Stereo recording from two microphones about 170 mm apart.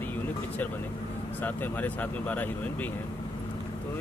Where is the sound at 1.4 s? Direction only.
10° left (ahead or behind).